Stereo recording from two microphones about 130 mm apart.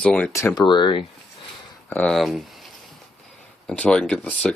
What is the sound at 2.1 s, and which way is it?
Speech, centre (ahead or behind).